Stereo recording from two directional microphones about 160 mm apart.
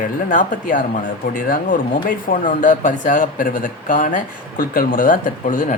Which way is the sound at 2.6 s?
55° left (ahead or behind).